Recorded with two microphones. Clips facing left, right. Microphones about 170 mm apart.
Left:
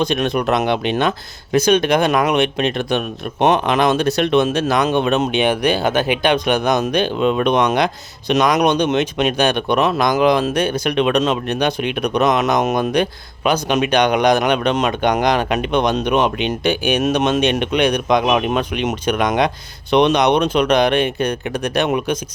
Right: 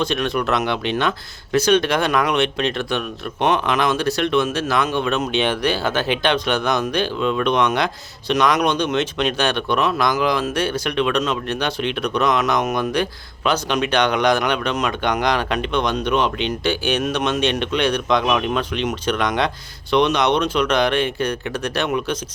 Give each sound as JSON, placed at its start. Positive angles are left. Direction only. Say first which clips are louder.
{"t": 0.0, "sound": "speech", "louder": "left 3 dB", "side_deg": 15}